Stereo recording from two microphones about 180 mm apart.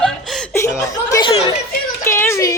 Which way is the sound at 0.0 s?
Centre (ahead or behind).